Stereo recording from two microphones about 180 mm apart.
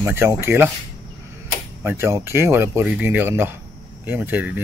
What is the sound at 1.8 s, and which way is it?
Speech, 15° right (ahead or behind).